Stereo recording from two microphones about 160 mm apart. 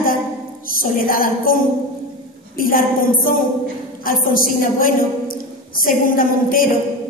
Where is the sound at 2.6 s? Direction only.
60° left (ahead or behind).